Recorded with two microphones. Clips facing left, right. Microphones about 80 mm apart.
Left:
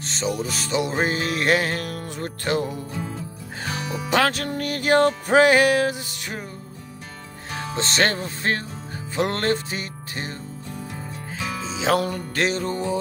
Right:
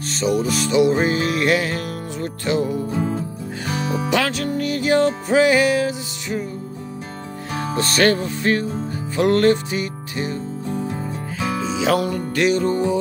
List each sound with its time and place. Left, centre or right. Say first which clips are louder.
0.4 s music: right 8 dB; left
2.9 s music: right 9 dB; right
4.1 s music: left 2 dB; left
7.7 s music: right 5 dB; left
10.7 s music: right 9 dB; right
11.6 s music: right 2 dB; left
12.6 s music: right 6 dB; right